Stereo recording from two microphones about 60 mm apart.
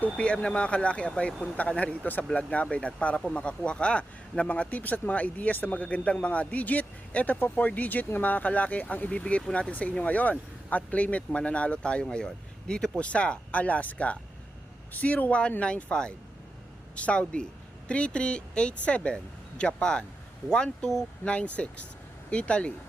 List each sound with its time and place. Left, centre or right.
0.0 s speech: left